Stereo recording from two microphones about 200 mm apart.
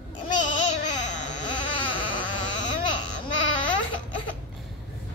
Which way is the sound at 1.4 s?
25° left (ahead or behind).